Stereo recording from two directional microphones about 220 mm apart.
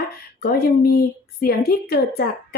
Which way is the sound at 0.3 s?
45° left (ahead or behind).